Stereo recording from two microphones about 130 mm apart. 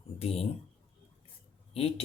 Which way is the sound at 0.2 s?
50° left (ahead or behind).